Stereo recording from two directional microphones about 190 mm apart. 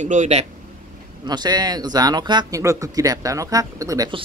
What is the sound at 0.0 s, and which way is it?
Speech, 40° right (ahead or behind).